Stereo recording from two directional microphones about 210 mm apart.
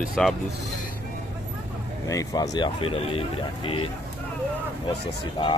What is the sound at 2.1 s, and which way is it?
Speech, 15° left (ahead or behind).